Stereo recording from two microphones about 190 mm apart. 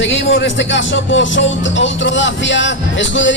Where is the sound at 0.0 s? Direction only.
75° left (ahead or behind).